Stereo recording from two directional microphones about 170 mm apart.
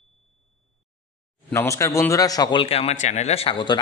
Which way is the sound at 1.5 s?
15° left (ahead or behind).